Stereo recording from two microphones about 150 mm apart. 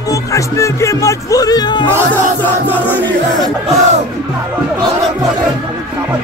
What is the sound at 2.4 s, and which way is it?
Music, 15° left (ahead or behind).